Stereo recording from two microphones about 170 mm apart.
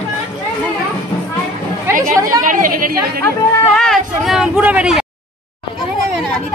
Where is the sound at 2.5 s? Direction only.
50° right (ahead or behind).